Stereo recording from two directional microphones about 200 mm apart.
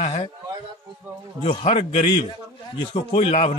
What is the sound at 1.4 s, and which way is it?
A man's voice, 30° left (ahead or behind).